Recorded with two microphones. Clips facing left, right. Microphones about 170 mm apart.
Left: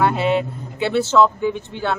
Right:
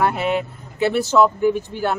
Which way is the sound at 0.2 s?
25° left (ahead or behind).